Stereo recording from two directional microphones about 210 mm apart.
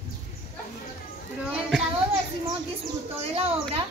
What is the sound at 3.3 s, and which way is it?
Speech, 25° right (ahead or behind).